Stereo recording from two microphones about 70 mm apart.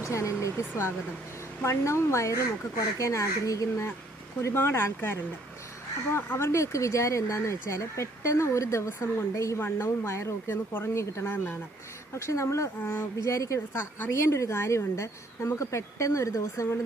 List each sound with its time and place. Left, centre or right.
0.0 s speech: left
4.4 s speech: left
6.1 s speech: left